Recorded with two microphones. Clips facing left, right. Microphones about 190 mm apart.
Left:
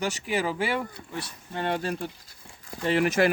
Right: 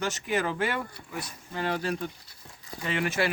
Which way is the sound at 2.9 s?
40° left (ahead or behind).